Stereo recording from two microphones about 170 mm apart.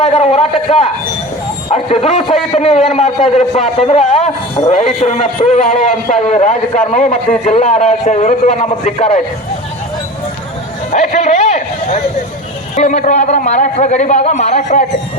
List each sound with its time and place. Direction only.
0.0 s a man's voice: 40° left (ahead or behind)
10.9 s a sound: 45° left (ahead or behind)
12.7 s a man's voice: 45° left (ahead or behind)